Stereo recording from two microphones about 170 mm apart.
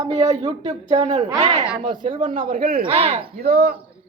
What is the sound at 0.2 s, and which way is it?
Speech, 40° right (ahead or behind).